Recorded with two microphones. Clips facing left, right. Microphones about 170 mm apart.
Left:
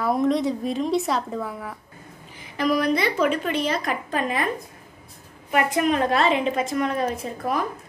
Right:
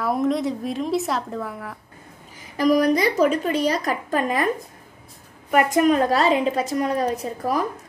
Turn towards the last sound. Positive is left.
turn(degrees=-35)  # may be behind; listen again after turning